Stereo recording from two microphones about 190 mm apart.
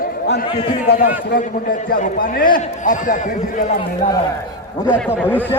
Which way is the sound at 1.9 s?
50° left (ahead or behind).